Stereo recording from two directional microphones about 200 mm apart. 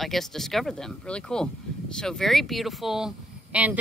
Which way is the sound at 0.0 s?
Centre (ahead or behind).